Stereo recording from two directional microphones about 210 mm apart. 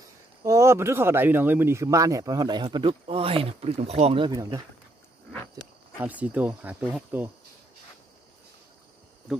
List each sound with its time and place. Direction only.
0.4 s speech: 15° right (ahead or behind)
5.9 s speech: 5° right (ahead or behind)